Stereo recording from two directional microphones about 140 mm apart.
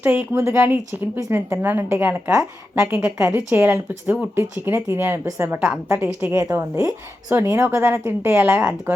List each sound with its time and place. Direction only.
0.0 s a woman's voice: 15° right (ahead or behind)